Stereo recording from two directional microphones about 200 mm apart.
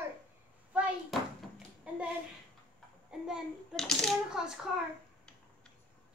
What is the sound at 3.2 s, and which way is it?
A child's voice, 5° right (ahead or behind).